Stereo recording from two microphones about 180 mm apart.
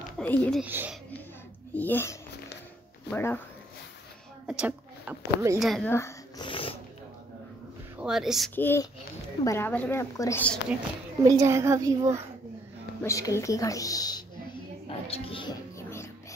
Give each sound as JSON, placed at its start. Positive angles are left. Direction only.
{"t": 0.2, "sound": "speech", "side_deg": 10}
{"t": 0.6, "sound": "a child's voice", "side_deg": -10}
{"t": 1.8, "sound": "a woman's voice", "side_deg": 10}
{"t": 4.5, "sound": "a woman's voice", "side_deg": -5}
{"t": 5.6, "sound": "speech", "side_deg": 0}
{"t": 5.9, "sound": "speech", "side_deg": 15}
{"t": 6.4, "sound": "snort", "side_deg": 30}
{"t": 8.0, "sound": "speech", "side_deg": 0}
{"t": 8.5, "sound": "a woman's voice", "side_deg": 10}
{"t": 11.2, "sound": "a child's voice", "side_deg": -15}
{"t": 13.0, "sound": "a woman's voice", "side_deg": 15}
{"t": 15.0, "sound": "music", "side_deg": 30}
{"t": 15.9, "sound": "music", "side_deg": 15}